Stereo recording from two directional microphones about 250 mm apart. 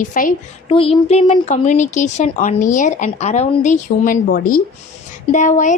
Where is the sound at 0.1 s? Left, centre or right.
Left.